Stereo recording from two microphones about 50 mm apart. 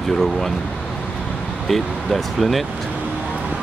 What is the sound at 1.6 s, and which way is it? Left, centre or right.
Speech, centre.